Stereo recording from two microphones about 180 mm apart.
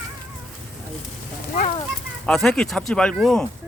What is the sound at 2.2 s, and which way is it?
Speech, 5° left (ahead or behind).